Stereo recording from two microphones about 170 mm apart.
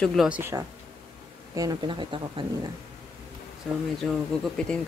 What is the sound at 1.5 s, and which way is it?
Speech, 20° right (ahead or behind).